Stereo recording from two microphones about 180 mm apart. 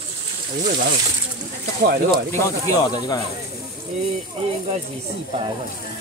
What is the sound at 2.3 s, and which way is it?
Speech, 15° left (ahead or behind).